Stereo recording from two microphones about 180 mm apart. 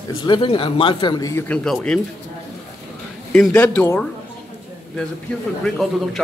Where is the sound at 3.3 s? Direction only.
5° left (ahead or behind).